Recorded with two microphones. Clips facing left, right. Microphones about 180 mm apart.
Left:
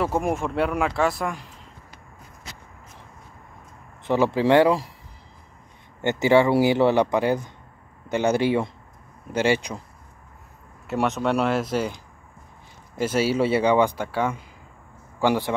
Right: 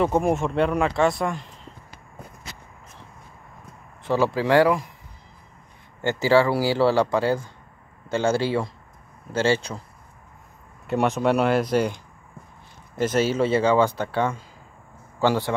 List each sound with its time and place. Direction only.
0.0 s speech: 5° left (ahead or behind)
4.0 s speech: 20° left (ahead or behind)
5.9 s speech: 20° left (ahead or behind)
10.9 s speech: centre (ahead or behind)
13.0 s speech: 10° left (ahead or behind)